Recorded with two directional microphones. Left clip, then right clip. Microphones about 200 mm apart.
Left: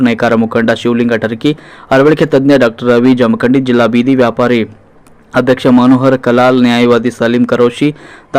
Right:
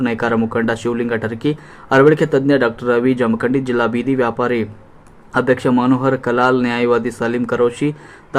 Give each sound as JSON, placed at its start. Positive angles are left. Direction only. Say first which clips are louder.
{"t": 0.0, "sound": "speech", "louder": "left 7 dB", "side_deg": 20}